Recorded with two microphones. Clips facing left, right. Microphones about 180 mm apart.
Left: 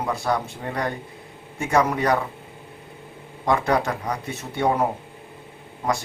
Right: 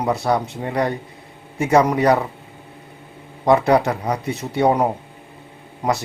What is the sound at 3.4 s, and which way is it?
A man's voice, 20° right (ahead or behind).